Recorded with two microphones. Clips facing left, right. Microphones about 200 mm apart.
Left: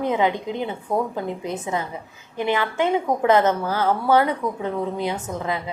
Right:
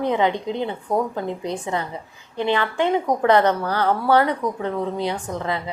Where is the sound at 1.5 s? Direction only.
20° left (ahead or behind).